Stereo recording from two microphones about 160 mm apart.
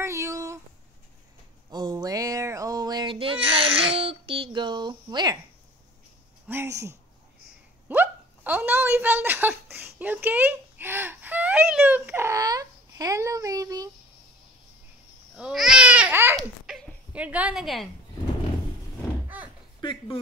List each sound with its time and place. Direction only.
0.0 s a sound: 15° right (ahead or behind)
1.7 s a sound: 25° right (ahead or behind)
6.4 s speech: 15° right (ahead or behind)
7.9 s hiccup: 10° right (ahead or behind)
15.3 s babbling: 5° right (ahead or behind)
16.3 s dog: 5° left (ahead or behind)
17.2 s a woman's voice: 10° right (ahead or behind)
19.2 s a sound: 10° right (ahead or behind)
19.8 s speech: 30° left (ahead or behind)